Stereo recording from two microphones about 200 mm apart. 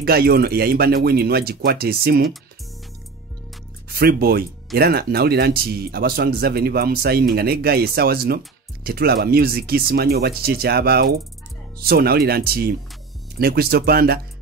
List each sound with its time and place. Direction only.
0.0 s speech: 50° right (ahead or behind)
3.9 s speech: 50° right (ahead or behind)